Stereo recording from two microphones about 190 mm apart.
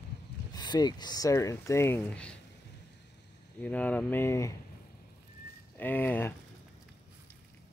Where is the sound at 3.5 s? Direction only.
10° left (ahead or behind).